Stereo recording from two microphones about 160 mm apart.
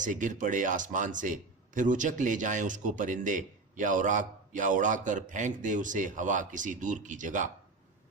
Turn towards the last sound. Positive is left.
turn(degrees=-50)  # may be behind; listen again after turning